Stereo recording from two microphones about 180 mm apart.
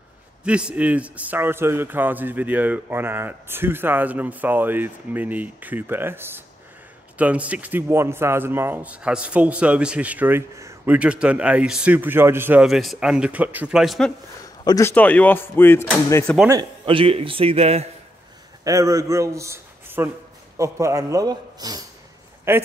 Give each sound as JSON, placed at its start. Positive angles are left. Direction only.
{"t": 0.4, "sound": "a man's voice", "side_deg": -5}
{"t": 14.4, "sound": "speech", "side_deg": 20}
{"t": 16.8, "sound": "a man's voice", "side_deg": -30}
{"t": 18.6, "sound": "a man's voice", "side_deg": -20}